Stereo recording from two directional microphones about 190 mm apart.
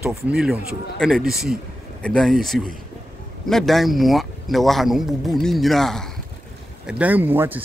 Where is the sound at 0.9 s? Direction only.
Centre (ahead or behind).